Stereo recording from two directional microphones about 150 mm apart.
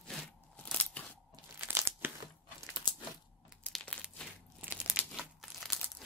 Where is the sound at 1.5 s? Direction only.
15° right (ahead or behind).